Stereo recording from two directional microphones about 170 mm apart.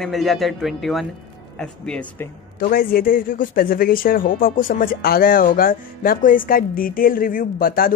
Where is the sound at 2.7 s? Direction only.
60° left (ahead or behind).